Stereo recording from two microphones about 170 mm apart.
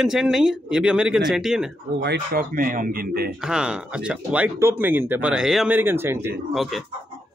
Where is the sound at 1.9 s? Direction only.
80° right; by 3.3 s 60° right (ahead or behind).